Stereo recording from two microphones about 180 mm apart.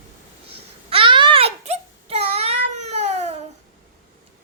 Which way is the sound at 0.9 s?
30° right (ahead or behind).